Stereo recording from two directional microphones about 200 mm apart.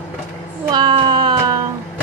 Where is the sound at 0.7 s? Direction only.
20° right (ahead or behind).